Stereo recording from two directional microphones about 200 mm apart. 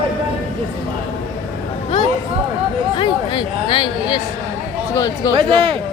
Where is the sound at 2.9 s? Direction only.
25° left (ahead or behind).